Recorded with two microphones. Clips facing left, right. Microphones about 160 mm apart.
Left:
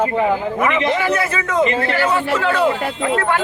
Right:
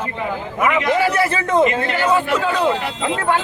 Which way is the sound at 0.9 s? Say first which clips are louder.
Right 2 dB; 30° right (ahead or behind).